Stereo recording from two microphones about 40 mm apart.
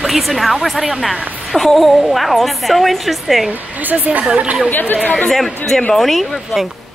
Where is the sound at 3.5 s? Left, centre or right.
Right.